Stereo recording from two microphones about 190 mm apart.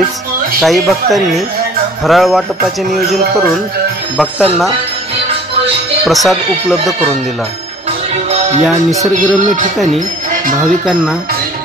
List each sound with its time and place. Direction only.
0.6 s speech: centre (ahead or behind)
6.0 s speech: centre (ahead or behind)
8.3 s music: 35° right (ahead or behind)
10.6 s speech: centre (ahead or behind)